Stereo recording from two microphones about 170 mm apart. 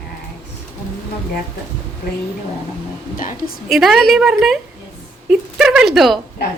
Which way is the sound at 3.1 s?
50° left (ahead or behind).